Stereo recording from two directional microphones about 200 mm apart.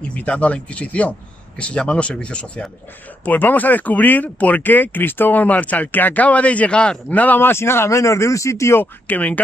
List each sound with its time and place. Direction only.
0.1 s speech: 5° left (ahead or behind)